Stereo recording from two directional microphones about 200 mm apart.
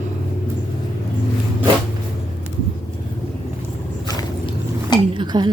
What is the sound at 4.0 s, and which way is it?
Dog, 20° left (ahead or behind).